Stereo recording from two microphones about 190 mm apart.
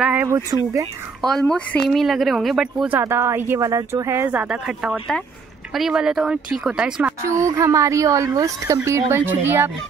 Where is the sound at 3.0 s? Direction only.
15° right (ahead or behind).